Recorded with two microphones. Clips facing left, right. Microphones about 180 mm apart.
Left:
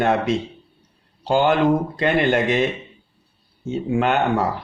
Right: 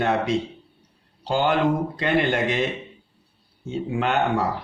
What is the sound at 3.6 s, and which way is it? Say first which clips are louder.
Speech: left 4 dB; 45° left (ahead or behind).